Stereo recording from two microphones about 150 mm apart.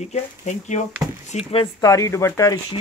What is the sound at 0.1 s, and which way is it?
Speech, 50° left (ahead or behind).